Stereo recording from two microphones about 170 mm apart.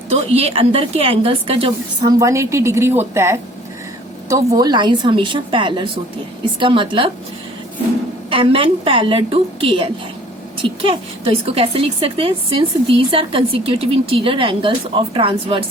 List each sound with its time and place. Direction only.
0.1 s a woman's voice: 35° right (ahead or behind)
2.1 s a woman's voice: 20° right (ahead or behind)
8.3 s a woman's voice: 30° right (ahead or behind)